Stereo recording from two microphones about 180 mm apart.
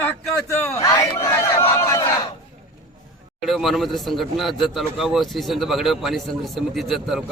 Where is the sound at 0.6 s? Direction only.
15° left (ahead or behind).